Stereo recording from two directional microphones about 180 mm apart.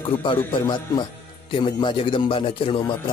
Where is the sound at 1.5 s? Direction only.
25° left (ahead or behind).